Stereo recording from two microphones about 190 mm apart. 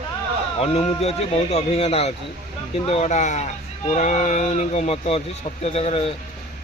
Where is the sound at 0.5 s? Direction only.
35° left (ahead or behind).